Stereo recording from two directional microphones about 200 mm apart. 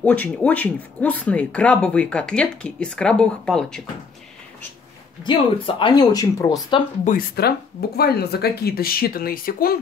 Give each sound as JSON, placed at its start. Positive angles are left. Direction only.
{"t": 0.0, "sound": "speech", "side_deg": 5}
{"t": 5.2, "sound": "speech", "side_deg": 25}
{"t": 7.1, "sound": "speech", "side_deg": 50}